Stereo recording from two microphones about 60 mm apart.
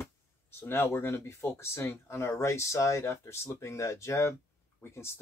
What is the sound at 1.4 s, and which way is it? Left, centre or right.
Speech, left.